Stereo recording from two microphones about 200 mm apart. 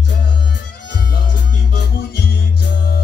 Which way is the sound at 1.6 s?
55° left (ahead or behind).